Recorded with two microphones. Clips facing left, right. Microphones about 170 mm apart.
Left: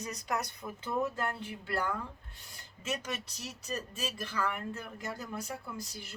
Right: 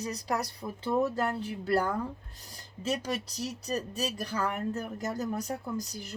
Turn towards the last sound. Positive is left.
turn(degrees=-40)  # may be behind; listen again after turning